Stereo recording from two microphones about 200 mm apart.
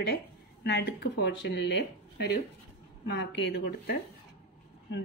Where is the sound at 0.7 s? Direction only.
55° left (ahead or behind).